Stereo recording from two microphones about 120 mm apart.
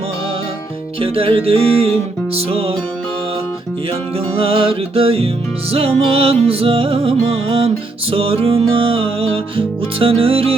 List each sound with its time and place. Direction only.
0.9 s music: 55° right (ahead or behind)
4.4 s music: 55° right (ahead or behind)